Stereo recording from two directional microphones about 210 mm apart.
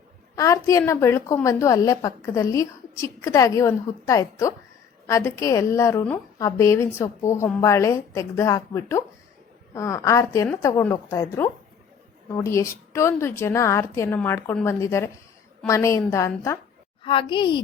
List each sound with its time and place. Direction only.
0.3 s a woman's voice: 15° left (ahead or behind)
17.0 s a woman's voice: 25° left (ahead or behind)